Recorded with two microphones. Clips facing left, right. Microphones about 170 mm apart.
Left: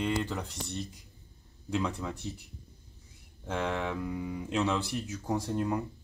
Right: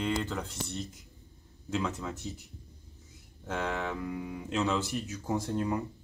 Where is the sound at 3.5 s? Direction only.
Centre (ahead or behind).